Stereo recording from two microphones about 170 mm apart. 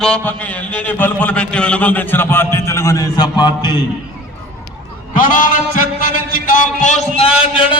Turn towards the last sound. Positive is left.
turn(degrees=30)  # may be behind; listen again after turning